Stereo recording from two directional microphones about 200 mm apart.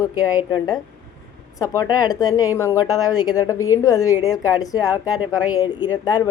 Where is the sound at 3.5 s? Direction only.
90° left.